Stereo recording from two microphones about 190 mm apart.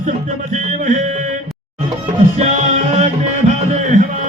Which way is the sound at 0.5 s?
45° right (ahead or behind).